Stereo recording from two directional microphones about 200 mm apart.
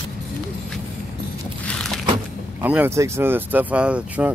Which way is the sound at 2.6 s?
10° right (ahead or behind).